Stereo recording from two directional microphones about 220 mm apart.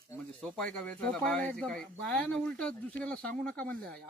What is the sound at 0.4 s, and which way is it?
Speech, 5° left (ahead or behind).